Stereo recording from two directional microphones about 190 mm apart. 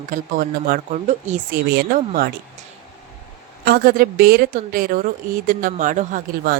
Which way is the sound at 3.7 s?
50° right (ahead or behind).